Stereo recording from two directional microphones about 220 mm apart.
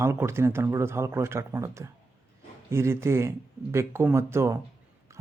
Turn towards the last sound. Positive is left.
turn(degrees=-10)  # may be behind; listen again after turning